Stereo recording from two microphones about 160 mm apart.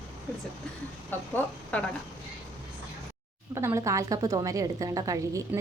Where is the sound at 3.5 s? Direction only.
15° right (ahead or behind).